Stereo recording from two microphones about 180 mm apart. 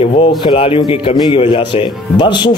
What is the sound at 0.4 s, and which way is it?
Speech, 30° left (ahead or behind).